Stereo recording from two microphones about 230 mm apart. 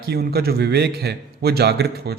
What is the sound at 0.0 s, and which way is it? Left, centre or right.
A man's voice, right.